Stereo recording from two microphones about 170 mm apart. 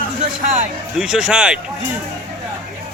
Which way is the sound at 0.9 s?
5° right (ahead or behind).